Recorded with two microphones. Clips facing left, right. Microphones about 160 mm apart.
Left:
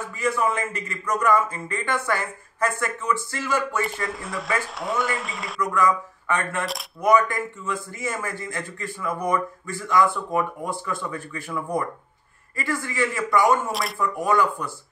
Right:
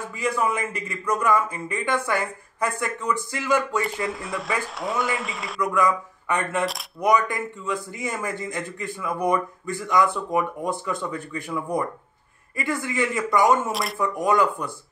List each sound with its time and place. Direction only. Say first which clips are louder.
0.2 s a man's voice: left 1 dB; 15° right (ahead or behind)
3.8 s speech: right 1 dB; centre (ahead or behind)
5.6 s a man's voice: even; 10° right (ahead or behind)
12.5 s a man's voice: right 1 dB; 15° right (ahead or behind)
13.7 s speech: right 1 dB; centre (ahead or behind)
13.9 s a man's voice: right 1 dB; 15° right (ahead or behind)